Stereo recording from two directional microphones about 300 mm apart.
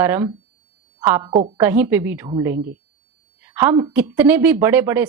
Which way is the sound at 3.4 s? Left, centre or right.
Centre.